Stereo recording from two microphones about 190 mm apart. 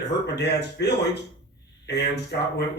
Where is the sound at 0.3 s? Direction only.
60° left (ahead or behind).